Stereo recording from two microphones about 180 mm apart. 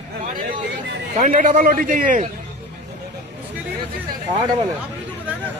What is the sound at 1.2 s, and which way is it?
A man's voice, 45° right (ahead or behind).